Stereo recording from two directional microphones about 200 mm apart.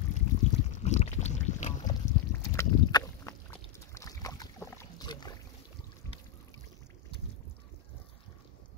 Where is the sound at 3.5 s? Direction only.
15° left (ahead or behind).